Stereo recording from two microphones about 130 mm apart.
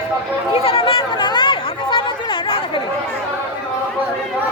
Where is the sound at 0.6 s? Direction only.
45° left (ahead or behind).